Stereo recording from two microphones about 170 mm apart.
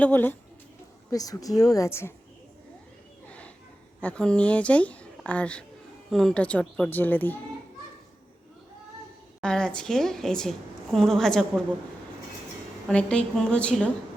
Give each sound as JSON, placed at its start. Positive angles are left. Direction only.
{"t": 0.0, "sound": "a woman's voice", "side_deg": 10}
{"t": 4.0, "sound": "speech", "side_deg": 5}
{"t": 9.4, "sound": "a woman's voice", "side_deg": 5}
{"t": 12.9, "sound": "a woman's voice", "side_deg": 5}